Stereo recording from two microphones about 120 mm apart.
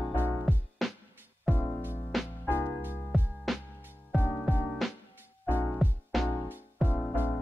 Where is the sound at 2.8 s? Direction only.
15° right (ahead or behind).